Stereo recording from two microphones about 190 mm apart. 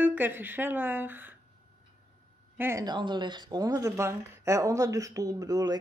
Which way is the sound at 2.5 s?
15° right (ahead or behind).